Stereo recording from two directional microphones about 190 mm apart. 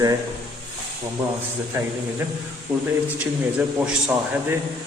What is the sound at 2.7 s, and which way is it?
A man's voice, 10° right (ahead or behind).